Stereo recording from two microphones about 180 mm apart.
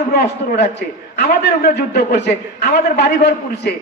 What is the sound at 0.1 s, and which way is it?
A man's voice, 65° left (ahead or behind).